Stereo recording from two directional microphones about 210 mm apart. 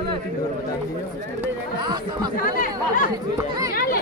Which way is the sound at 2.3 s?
40° left (ahead or behind).